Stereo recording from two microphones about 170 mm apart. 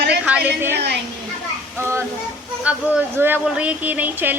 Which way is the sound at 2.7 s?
10° right (ahead or behind).